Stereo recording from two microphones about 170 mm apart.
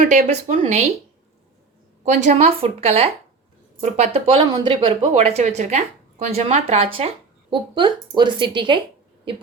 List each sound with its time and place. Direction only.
0.3 s speech: 40° right (ahead or behind)
2.0 s speech: 45° right (ahead or behind); by 8.8 s 30° right (ahead or behind)